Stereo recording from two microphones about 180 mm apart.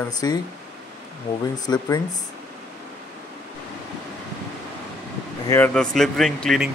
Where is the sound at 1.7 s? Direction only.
20° left (ahead or behind).